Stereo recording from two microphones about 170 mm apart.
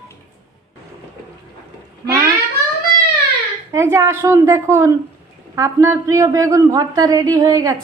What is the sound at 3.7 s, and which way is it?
A woman's voice, 15° right (ahead or behind).